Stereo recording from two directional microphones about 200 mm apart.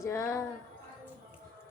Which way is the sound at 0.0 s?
15° left (ahead or behind).